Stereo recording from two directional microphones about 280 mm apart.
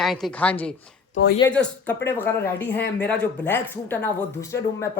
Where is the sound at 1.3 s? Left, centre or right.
Centre.